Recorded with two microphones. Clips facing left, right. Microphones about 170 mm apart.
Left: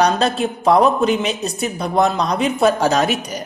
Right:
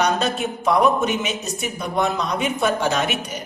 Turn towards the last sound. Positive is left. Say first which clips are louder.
# left 5 dB
turn(degrees=40)  # may be behind; listen again after turning